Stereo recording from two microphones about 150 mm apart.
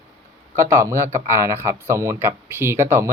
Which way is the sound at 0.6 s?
20° right (ahead or behind).